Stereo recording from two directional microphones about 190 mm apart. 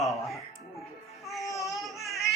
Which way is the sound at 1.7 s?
Centre (ahead or behind).